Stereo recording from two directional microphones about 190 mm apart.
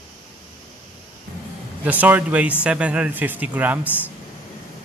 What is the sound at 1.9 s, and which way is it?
Speech, 10° right (ahead or behind).